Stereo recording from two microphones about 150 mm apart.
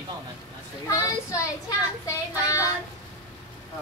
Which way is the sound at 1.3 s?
20° left (ahead or behind).